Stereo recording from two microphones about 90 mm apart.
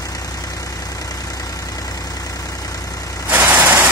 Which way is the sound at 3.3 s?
20° right (ahead or behind).